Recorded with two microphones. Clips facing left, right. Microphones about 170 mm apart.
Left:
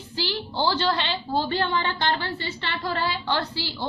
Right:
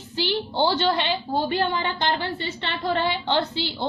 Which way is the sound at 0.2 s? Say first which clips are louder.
Right 4 dB; 20° right (ahead or behind).